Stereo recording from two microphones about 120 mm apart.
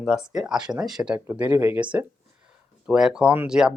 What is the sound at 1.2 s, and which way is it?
Speech, 15° right (ahead or behind).